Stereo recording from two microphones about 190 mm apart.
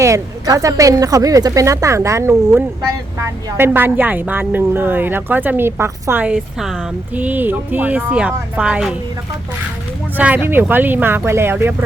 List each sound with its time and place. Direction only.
0.0 s a woman's voice: 15° right (ahead or behind)
10.2 s a woman's voice: 10° right (ahead or behind)